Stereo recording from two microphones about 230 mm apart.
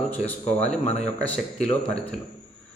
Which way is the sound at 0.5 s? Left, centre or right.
Centre.